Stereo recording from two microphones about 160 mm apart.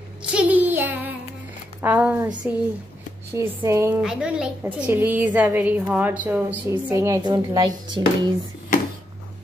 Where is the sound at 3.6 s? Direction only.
15° right (ahead or behind).